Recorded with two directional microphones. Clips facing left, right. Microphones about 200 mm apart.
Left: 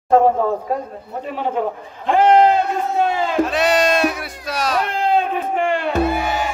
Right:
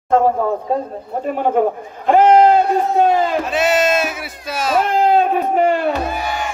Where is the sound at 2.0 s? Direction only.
45° right (ahead or behind).